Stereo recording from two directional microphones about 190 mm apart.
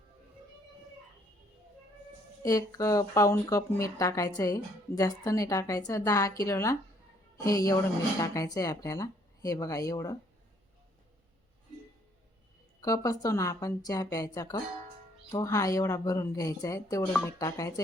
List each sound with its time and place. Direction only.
2.4 s speech: 20° left (ahead or behind)
12.8 s a woman's voice: 20° left (ahead or behind)